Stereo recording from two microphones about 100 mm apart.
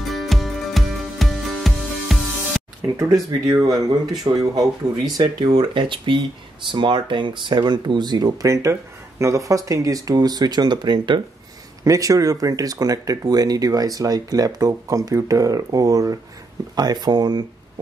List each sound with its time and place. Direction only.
0.1 s music: centre (ahead or behind)
2.8 s speech: 35° right (ahead or behind)
11.8 s speech: 35° right (ahead or behind)